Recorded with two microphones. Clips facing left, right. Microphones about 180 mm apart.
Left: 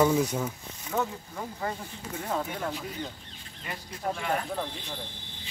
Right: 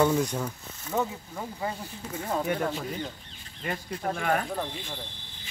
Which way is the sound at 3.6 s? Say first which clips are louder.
Right 2 dB; 55° right (ahead or behind).